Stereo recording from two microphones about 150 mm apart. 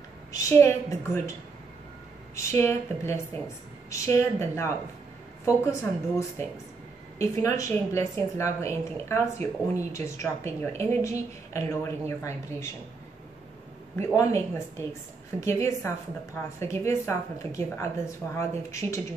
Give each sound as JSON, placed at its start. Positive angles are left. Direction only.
{"t": 0.3, "sound": "a woman's voice", "side_deg": 20}
{"t": 2.3, "sound": "a woman's voice", "side_deg": 15}
{"t": 13.9, "sound": "a woman's voice", "side_deg": 20}